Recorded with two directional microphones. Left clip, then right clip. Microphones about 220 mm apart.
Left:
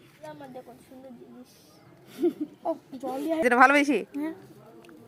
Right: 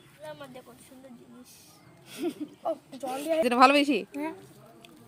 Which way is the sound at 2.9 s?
30° right (ahead or behind).